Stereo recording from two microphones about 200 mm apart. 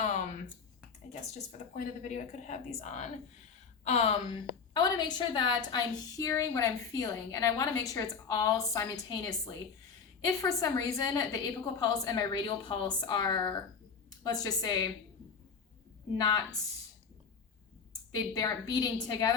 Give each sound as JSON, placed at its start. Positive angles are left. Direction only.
{"t": 0.0, "sound": "a sound", "side_deg": 40}
{"t": 1.3, "sound": "a woman's voice", "side_deg": 40}
{"t": 16.1, "sound": "a woman's voice", "side_deg": 20}
{"t": 18.1, "sound": "a woman's voice", "side_deg": 20}